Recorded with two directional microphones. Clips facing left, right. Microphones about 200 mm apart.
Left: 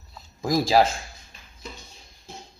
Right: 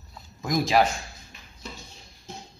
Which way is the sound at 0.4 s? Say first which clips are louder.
Left 2 dB; 30° left (ahead or behind).